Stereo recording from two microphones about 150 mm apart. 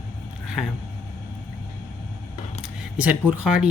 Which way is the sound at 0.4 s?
5° right (ahead or behind).